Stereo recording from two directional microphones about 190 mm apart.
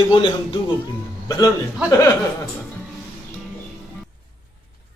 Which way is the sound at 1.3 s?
15° left (ahead or behind).